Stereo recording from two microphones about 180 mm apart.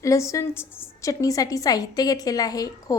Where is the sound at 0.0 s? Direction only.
15° left (ahead or behind).